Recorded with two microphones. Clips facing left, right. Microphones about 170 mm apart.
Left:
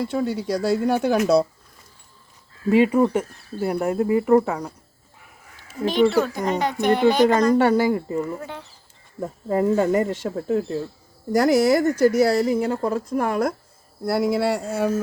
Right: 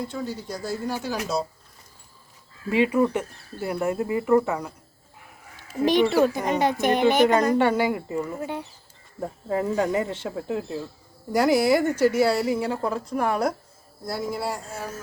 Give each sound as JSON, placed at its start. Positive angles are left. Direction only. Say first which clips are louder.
{"t": 0.0, "sound": "speech", "louder": "left 7 dB", "side_deg": 65}
{"t": 2.6, "sound": "speech", "louder": "left 4 dB", "side_deg": 40}
{"t": 5.8, "sound": "a child's voice", "louder": "even", "side_deg": -15}
{"t": 7.3, "sound": "speech", "louder": "left 3 dB", "side_deg": 40}
{"t": 8.4, "sound": "speech", "louder": "right 4 dB", "side_deg": -15}
{"t": 9.5, "sound": "a woman's voice", "louder": "left 5 dB", "side_deg": 50}
{"t": 14.0, "sound": "speech", "louder": "left 8 dB", "side_deg": 70}